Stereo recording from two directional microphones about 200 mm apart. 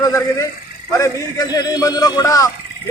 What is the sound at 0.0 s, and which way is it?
A man's voice, 15° left (ahead or behind).